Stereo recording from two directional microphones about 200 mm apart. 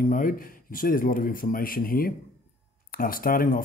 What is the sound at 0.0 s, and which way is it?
Speech, 45° left (ahead or behind).